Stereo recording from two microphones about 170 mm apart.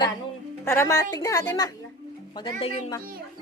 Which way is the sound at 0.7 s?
15° left (ahead or behind).